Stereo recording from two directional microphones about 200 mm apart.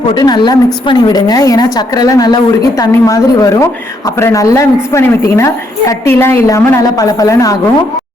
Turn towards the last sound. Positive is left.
turn(degrees=15)  # may be behind; listen again after turning